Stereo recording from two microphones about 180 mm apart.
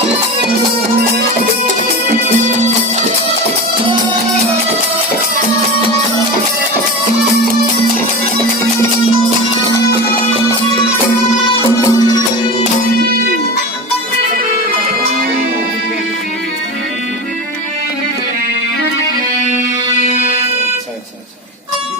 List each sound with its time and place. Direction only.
11.9 s music: 20° left (ahead or behind)